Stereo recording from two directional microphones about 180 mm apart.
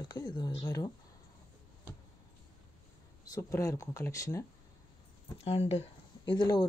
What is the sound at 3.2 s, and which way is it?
Speech, 20° left (ahead or behind).